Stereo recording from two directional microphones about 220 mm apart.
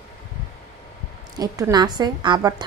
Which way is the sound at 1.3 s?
15° right (ahead or behind).